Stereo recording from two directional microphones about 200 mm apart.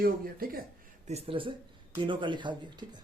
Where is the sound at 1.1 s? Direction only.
25° right (ahead or behind).